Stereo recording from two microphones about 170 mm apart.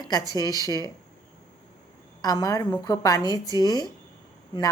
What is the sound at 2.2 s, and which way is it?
Speech, 20° left (ahead or behind).